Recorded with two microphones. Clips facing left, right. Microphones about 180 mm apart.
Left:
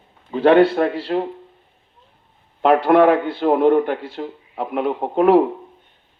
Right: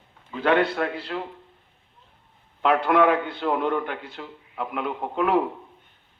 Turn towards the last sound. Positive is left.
turn(degrees=35)  # may be behind; listen again after turning